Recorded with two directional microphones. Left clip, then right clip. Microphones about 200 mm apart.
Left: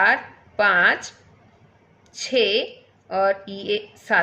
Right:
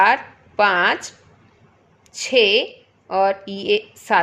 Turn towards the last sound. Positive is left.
turn(degrees=-30)  # may be behind; listen again after turning